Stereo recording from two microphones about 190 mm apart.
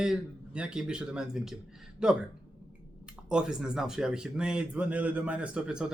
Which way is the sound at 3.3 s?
5° right (ahead or behind).